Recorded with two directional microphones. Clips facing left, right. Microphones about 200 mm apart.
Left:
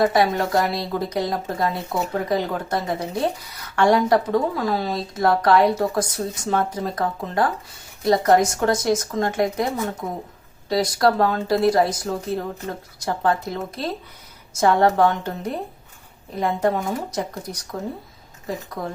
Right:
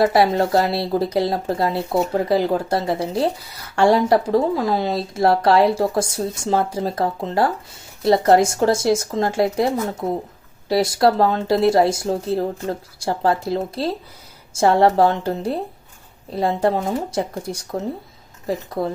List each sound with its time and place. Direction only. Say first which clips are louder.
0.0 s speech: right 3 dB; 30° right (ahead or behind)